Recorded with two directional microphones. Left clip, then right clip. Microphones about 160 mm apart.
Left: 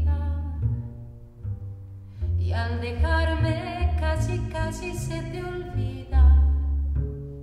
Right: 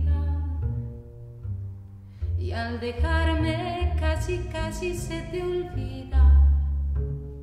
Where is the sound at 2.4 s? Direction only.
20° right (ahead or behind).